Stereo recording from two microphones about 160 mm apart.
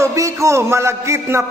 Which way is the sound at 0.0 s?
20° right (ahead or behind).